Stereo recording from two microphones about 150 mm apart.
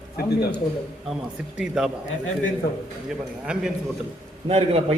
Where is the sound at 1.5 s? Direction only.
5° right (ahead or behind).